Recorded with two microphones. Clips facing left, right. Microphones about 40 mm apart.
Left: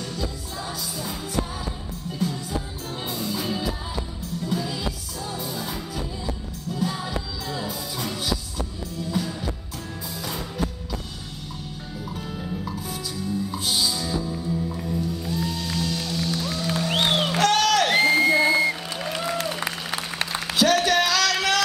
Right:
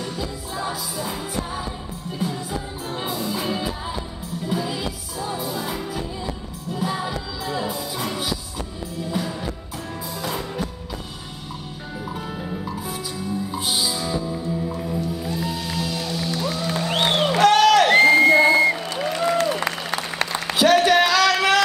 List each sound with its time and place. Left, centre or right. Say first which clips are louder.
0.0 s music: right 2 dB; centre
2.2 s music: right 1 dB; centre
12.3 s music: right 2 dB; centre
19.3 s applause: right 6 dB; centre
20.2 s a sound: right 2 dB; centre